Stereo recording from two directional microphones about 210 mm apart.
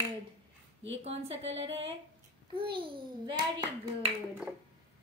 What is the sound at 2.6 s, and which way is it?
A child's voice, 25° right (ahead or behind).